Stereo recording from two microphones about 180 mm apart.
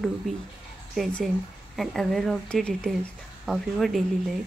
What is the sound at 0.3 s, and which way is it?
Speech, centre (ahead or behind).